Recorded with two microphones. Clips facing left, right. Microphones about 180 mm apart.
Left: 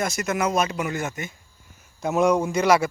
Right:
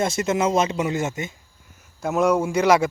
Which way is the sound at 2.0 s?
Centre (ahead or behind).